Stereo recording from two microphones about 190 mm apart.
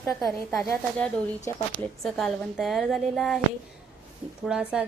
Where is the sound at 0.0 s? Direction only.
Centre (ahead or behind).